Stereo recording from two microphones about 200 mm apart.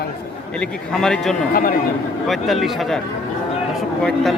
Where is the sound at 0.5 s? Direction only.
5° left (ahead or behind).